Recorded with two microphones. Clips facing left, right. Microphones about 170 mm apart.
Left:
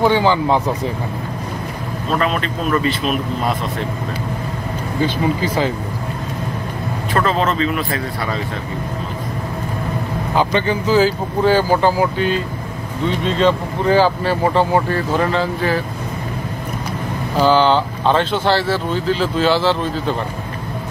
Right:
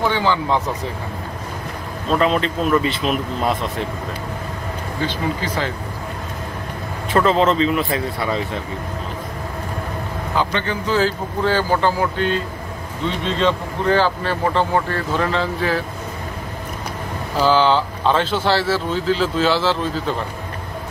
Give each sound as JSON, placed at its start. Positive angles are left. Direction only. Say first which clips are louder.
{"t": 0.0, "sound": "speech", "louder": "left 5 dB", "side_deg": 15}
{"t": 2.1, "sound": "speech", "louder": "right 2 dB", "side_deg": -20}
{"t": 5.0, "sound": "speech", "louder": "left 5 dB", "side_deg": 10}
{"t": 7.2, "sound": "speech", "louder": "right 2 dB", "side_deg": -20}
{"t": 10.3, "sound": "speech", "louder": "left 4 dB", "side_deg": 15}
{"t": 13.4, "sound": "speech", "louder": "left 3 dB", "side_deg": 10}
{"t": 17.4, "sound": "speech", "louder": "left 2 dB", "side_deg": 0}